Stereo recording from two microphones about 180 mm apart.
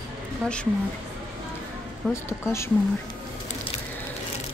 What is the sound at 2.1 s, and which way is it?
Speech, 15° left (ahead or behind).